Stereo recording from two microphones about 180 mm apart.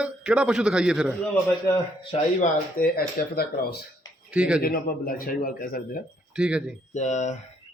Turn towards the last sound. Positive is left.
turn(degrees=40)  # may be behind; listen again after turning